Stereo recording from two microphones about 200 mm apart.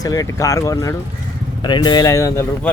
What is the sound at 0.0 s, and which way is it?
Speech, 15° left (ahead or behind).